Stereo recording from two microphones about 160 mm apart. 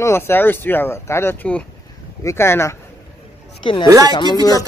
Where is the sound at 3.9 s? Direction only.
20° right (ahead or behind).